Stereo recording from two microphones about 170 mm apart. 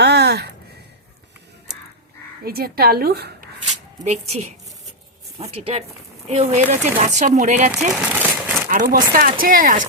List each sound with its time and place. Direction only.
0.0 s a sound: 75° right (ahead or behind)
2.4 s speech: 65° right (ahead or behind)
3.7 s speech: 40° right (ahead or behind)
7.9 s crumpling: 10° right (ahead or behind)
8.7 s speech: 55° right (ahead or behind)